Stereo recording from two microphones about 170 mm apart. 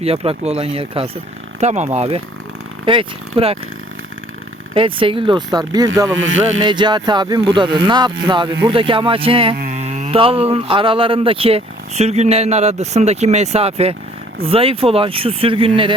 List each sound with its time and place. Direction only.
0.0 s speech: 35° right (ahead or behind)
4.7 s speech: 30° right (ahead or behind)
9.6 s mantra: 45° right (ahead or behind)
10.2 s speech: 30° right (ahead or behind)